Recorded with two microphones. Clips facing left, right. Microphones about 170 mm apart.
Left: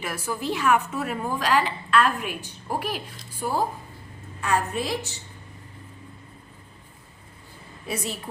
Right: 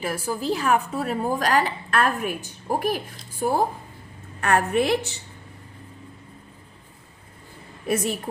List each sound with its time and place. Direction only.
0.0 s a woman's voice: 35° right (ahead or behind); by 3.7 s 50° right (ahead or behind)
4.4 s a woman's voice: 65° right (ahead or behind)
7.9 s a woman's voice: 50° right (ahead or behind)